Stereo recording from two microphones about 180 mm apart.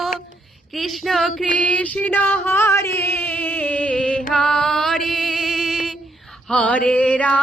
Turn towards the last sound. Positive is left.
turn(degrees=5)  # may be behind; listen again after turning